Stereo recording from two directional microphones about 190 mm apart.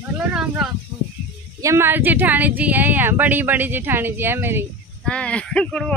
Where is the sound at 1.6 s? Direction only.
15° right (ahead or behind).